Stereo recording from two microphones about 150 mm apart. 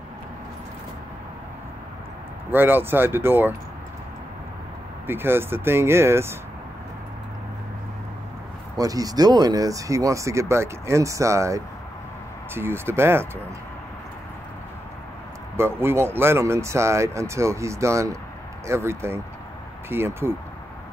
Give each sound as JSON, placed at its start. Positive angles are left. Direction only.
{"t": 2.5, "sound": "speech", "side_deg": -15}
{"t": 5.0, "sound": "speech", "side_deg": -15}
{"t": 8.7, "sound": "speech", "side_deg": -25}
{"t": 15.5, "sound": "speech", "side_deg": -15}